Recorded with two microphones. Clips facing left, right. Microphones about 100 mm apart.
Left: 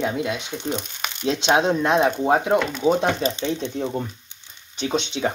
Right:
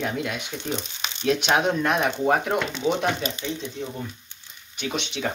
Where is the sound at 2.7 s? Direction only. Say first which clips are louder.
Left 4 dB; 40° left (ahead or behind).